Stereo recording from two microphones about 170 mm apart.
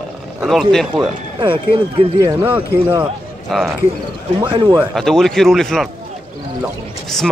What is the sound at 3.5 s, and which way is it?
Speech, centre (ahead or behind).